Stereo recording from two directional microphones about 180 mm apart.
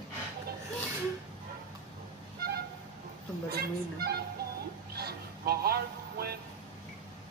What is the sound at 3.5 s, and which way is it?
Music, 60° right (ahead or behind).